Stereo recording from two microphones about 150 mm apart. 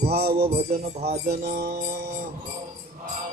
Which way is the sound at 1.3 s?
65° right (ahead or behind).